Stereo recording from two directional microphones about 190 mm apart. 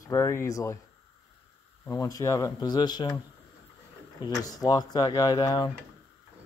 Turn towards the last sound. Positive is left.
turn(degrees=20)  # may be behind; listen again after turning